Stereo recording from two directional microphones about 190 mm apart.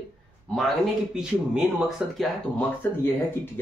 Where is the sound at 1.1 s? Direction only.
5° right (ahead or behind).